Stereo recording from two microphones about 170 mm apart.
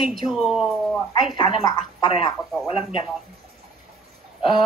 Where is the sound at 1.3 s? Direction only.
30° left (ahead or behind).